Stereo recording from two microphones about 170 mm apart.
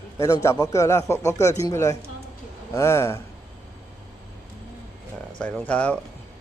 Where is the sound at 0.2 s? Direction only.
20° left (ahead or behind).